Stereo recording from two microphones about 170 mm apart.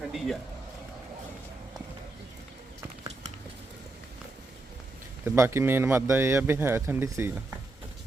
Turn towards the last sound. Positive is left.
turn(degrees=-15)  # may be behind; listen again after turning